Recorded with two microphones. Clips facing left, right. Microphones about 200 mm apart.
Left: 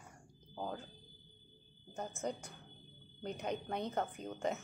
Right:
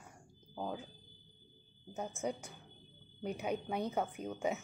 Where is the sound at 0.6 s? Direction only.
10° right (ahead or behind).